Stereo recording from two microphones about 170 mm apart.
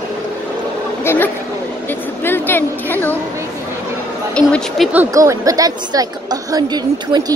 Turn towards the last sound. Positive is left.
turn(degrees=-25)  # may be behind; listen again after turning